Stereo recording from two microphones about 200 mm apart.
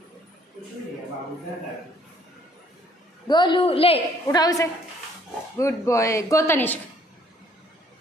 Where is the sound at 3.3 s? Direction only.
25° left (ahead or behind).